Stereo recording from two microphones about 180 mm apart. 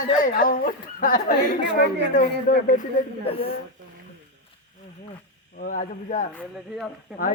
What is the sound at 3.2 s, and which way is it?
Speech, 30° left (ahead or behind).